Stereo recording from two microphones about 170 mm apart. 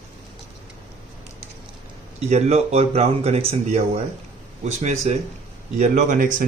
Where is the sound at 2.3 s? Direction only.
40° right (ahead or behind).